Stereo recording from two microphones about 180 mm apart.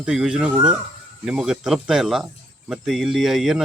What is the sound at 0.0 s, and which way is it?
Speech, 5° right (ahead or behind).